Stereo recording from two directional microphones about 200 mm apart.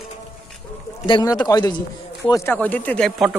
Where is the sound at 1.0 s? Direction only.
20° left (ahead or behind); by 3.3 s centre (ahead or behind).